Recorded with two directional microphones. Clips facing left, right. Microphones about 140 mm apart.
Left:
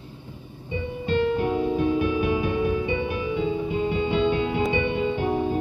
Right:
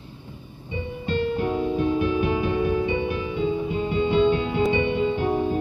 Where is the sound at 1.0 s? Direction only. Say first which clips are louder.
Left 2 dB; 30° right (ahead or behind).